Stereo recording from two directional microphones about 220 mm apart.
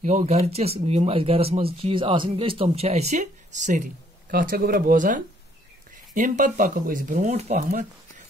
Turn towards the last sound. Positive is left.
turn(degrees=-35)  # may be behind; listen again after turning